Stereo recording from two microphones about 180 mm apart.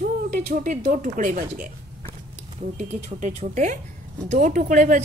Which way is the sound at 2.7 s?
40° right (ahead or behind).